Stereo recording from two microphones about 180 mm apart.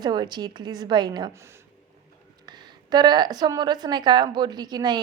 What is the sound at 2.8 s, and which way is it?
A woman's voice, 25° right (ahead or behind).